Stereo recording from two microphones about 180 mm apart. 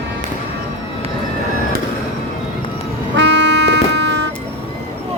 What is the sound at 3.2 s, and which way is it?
Vehicle, 75° right (ahead or behind).